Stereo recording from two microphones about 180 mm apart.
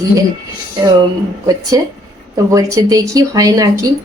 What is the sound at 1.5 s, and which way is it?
Speech, 20° right (ahead or behind).